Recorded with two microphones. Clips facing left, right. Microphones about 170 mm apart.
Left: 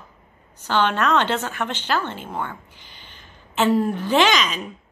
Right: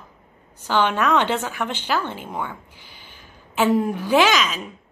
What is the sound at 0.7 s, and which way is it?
A woman's voice, 10° right (ahead or behind).